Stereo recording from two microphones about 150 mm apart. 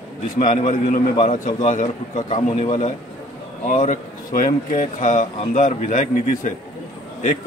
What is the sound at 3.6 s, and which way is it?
A man's voice, 60° left (ahead or behind).